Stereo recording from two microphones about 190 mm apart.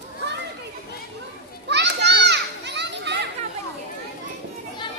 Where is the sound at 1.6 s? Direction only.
65° right (ahead or behind).